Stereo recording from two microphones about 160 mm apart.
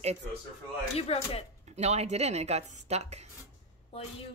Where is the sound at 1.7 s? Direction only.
45° right (ahead or behind).